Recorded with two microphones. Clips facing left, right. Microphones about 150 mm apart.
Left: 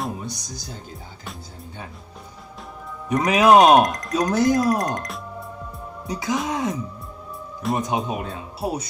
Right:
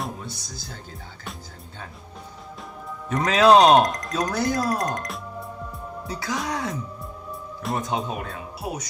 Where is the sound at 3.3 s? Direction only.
20° left (ahead or behind).